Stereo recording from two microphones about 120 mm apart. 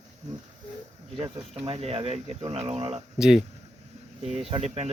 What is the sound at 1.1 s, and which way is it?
Speech, 50° right (ahead or behind).